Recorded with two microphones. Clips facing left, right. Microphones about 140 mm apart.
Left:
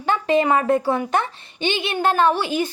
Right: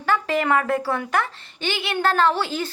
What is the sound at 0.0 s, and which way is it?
A woman's voice, 20° left (ahead or behind).